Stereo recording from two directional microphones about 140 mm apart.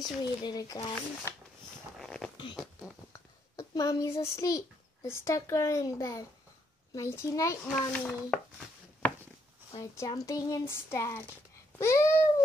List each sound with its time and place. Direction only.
0.0 s speech: 30° left (ahead or behind)
2.0 s a sound: 5° left (ahead or behind)
2.5 s a child's voice: 5° right (ahead or behind)
3.1 s a child's voice: 25° left (ahead or behind)
7.6 s a child's voice: 5° left (ahead or behind)
8.3 s a sound: 5° left (ahead or behind)
9.8 s speech: 25° left (ahead or behind)